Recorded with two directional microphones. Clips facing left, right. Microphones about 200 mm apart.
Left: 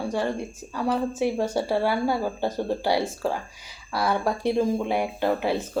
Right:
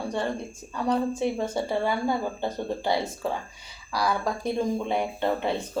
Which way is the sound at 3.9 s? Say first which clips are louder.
Left 1 dB; 25° left (ahead or behind).